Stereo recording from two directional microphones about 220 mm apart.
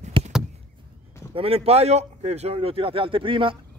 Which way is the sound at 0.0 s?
30° right (ahead or behind).